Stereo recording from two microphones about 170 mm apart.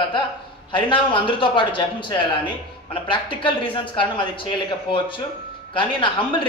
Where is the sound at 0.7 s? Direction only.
30° left (ahead or behind).